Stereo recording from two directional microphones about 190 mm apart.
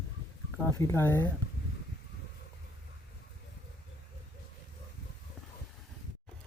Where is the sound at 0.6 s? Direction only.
15° left (ahead or behind).